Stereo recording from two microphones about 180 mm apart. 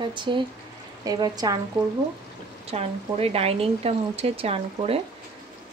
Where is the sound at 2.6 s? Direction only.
35° right (ahead or behind).